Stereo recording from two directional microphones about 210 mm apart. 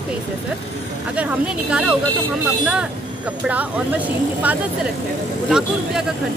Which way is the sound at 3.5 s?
5° right (ahead or behind).